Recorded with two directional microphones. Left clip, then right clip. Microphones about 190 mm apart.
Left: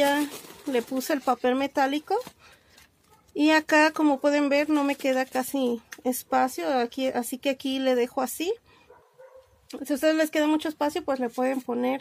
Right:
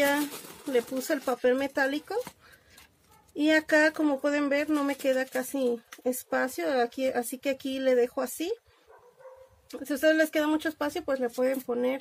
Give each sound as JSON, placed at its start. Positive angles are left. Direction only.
{"t": 0.7, "sound": "speech", "side_deg": 45}
{"t": 3.3, "sound": "speech", "side_deg": 50}
{"t": 9.7, "sound": "speech", "side_deg": 40}